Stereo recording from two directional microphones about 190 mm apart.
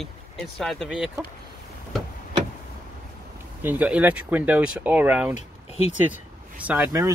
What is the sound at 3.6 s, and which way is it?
Speech, 10° right (ahead or behind).